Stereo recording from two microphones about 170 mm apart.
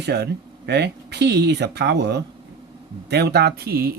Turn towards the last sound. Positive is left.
turn(degrees=-65)  # may be behind; listen again after turning